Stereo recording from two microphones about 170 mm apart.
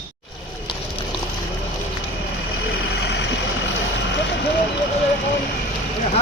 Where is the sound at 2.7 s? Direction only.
70° left (ahead or behind).